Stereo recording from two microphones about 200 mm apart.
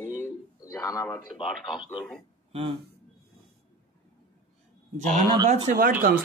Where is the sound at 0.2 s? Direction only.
15° left (ahead or behind).